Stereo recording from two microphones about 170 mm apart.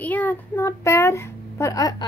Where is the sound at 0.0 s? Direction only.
10° left (ahead or behind).